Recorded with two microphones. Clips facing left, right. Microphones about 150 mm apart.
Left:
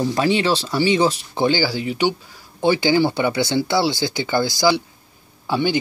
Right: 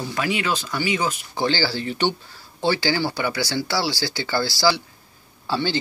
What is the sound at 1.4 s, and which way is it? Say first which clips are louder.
Speech: left 4 dB; 15° left (ahead or behind).